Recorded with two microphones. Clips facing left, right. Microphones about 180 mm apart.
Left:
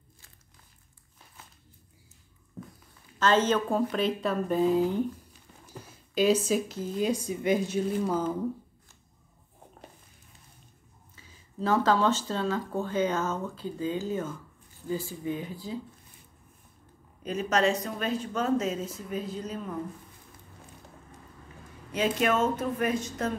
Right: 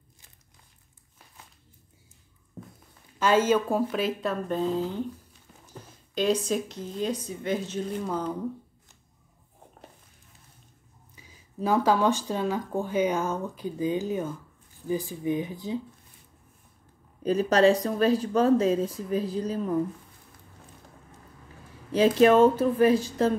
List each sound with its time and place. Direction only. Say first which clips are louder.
3.2 s speech: right 2 dB; 10° right (ahead or behind)
11.1 s speech: right 1 dB; 15° right (ahead or behind)
17.2 s speech: right 6 dB; 35° right (ahead or behind)
21.9 s speech: right 8 dB; 30° right (ahead or behind)